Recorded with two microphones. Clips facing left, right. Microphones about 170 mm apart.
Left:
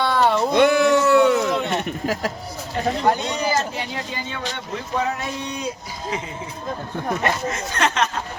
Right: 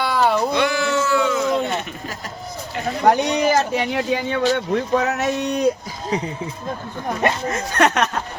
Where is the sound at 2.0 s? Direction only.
50° left (ahead or behind).